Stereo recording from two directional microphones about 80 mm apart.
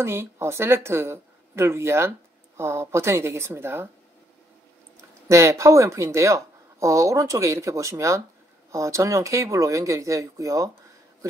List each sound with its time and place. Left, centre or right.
0.0 s speech: right
5.3 s speech: right